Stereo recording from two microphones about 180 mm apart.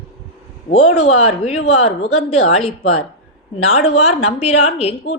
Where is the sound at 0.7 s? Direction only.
35° left (ahead or behind).